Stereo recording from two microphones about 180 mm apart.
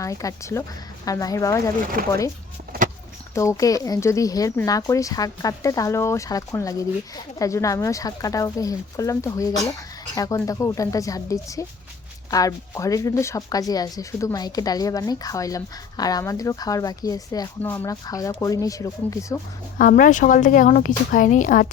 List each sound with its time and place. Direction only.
0.0 s a woman's voice: 20° left (ahead or behind)
3.3 s speech: 20° left (ahead or behind)
19.8 s a woman's voice: 45° left (ahead or behind)